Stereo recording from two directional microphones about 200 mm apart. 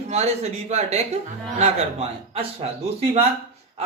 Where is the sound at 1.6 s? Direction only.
30° right (ahead or behind).